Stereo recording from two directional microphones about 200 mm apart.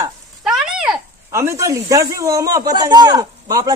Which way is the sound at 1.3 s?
15° right (ahead or behind).